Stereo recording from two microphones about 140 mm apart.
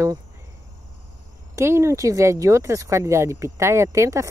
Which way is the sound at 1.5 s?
20° right (ahead or behind).